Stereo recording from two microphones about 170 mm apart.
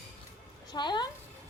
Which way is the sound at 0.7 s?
25° left (ahead or behind).